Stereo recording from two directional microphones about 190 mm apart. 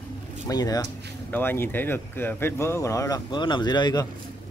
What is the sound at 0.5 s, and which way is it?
Speech, 20° left (ahead or behind).